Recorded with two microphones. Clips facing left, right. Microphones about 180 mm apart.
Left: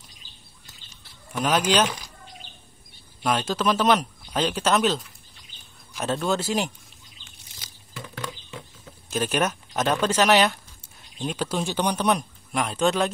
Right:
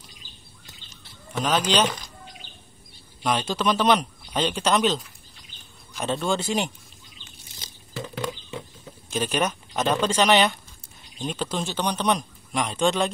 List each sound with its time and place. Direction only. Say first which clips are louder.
1.3 s a man's voice: left 1 dB; 10° left (ahead or behind)
3.2 s speech: even; centre (ahead or behind)
8.0 s a sound: right 5 dB; 20° right (ahead or behind)
9.3 s a man's voice: left 1 dB; 10° left (ahead or behind)